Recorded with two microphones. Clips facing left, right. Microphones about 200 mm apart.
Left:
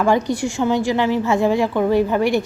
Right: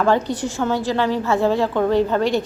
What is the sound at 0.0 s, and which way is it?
A woman's voice, 10° left (ahead or behind).